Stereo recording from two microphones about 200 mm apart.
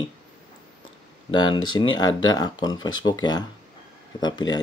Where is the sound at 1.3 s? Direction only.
20° left (ahead or behind).